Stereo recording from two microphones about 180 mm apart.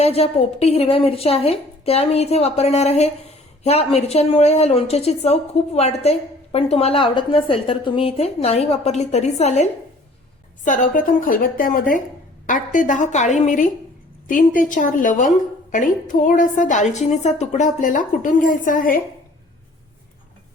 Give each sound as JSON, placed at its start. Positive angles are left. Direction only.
{"t": 0.0, "sound": "a woman's voice", "side_deg": 35}